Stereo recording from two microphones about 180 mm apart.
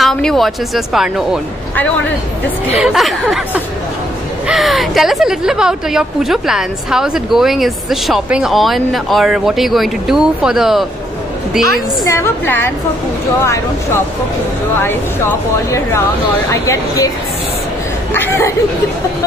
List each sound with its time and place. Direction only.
0.0 s speech: 5° left (ahead or behind)
2.7 s speech: 5° right (ahead or behind)
12.0 s speech: 15° left (ahead or behind)
14.8 s speech: 10° left (ahead or behind)
18.1 s speech: 15° left (ahead or behind)